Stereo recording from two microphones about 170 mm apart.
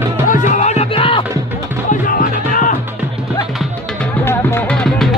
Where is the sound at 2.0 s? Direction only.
55° left (ahead or behind).